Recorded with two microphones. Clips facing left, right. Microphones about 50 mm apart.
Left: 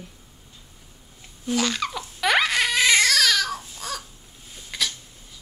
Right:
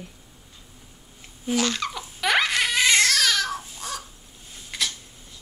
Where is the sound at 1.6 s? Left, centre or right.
Centre.